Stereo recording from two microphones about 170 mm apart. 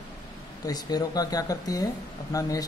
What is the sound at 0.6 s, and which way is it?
Speech, 20° left (ahead or behind).